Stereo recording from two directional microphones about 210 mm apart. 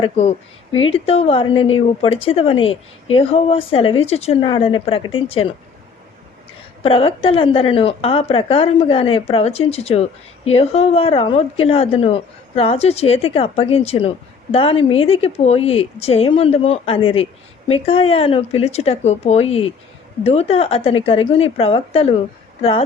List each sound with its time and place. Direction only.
0.0 s a woman's voice: 30° left (ahead or behind)
6.8 s a woman's voice: 25° left (ahead or behind)